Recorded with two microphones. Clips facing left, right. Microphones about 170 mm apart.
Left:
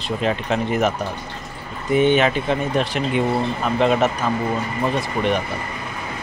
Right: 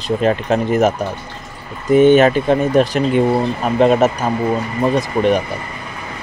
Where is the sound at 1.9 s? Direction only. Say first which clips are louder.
Right 7 dB; 45° right (ahead or behind).